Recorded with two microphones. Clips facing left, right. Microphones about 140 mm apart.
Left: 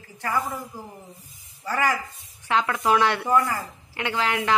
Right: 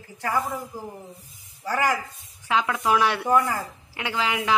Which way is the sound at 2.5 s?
10° right (ahead or behind).